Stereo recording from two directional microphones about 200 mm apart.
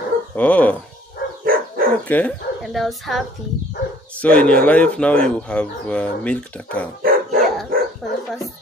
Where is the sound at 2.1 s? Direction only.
5° left (ahead or behind).